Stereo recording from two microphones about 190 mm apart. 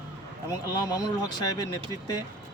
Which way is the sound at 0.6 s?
20° left (ahead or behind).